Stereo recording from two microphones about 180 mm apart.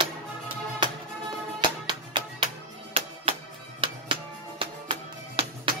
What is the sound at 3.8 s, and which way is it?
Music, 30° right (ahead or behind).